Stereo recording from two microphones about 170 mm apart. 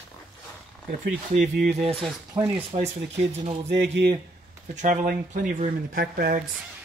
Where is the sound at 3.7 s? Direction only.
80° right.